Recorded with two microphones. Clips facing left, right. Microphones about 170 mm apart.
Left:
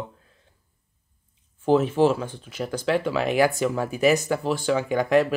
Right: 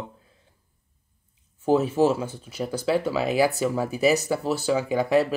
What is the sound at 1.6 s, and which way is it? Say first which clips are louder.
Speech: left 1 dB; 10° right (ahead or behind).